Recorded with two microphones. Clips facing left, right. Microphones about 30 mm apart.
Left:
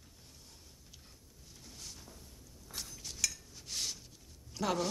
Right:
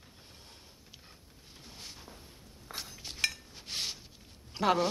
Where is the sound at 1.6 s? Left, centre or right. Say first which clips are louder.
Right 3 dB; right.